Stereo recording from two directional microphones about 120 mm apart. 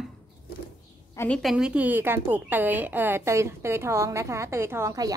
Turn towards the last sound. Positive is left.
turn(degrees=-30)  # may be behind; listen again after turning